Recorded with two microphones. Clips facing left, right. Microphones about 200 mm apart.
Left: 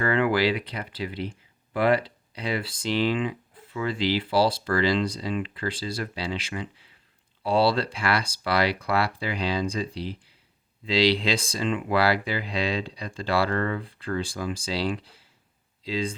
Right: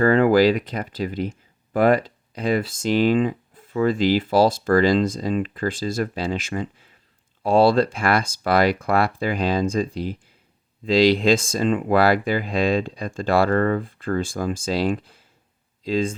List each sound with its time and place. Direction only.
0.0 s speech: 40° right (ahead or behind)